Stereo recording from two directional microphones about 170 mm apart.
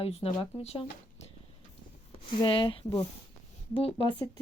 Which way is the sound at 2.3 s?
30° left (ahead or behind).